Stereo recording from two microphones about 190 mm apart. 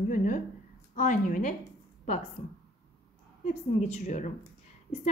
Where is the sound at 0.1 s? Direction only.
45° left (ahead or behind).